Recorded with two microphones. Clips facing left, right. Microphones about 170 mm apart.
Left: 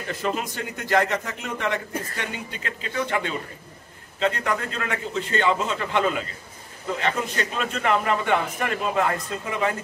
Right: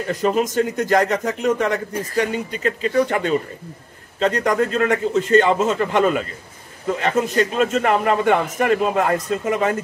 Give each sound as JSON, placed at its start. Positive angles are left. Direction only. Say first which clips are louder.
{"t": 0.1, "sound": "a man's voice", "louder": "right 8 dB", "side_deg": -40}